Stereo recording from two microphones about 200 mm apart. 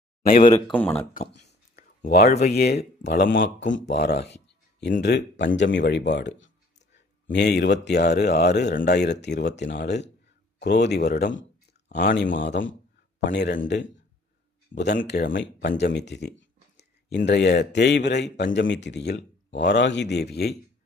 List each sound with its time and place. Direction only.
0.3 s speech: 45° left (ahead or behind)
0.8 s speech: 10° left (ahead or behind)
2.0 s speech: 50° left (ahead or behind)
12.3 s speech: 65° left (ahead or behind)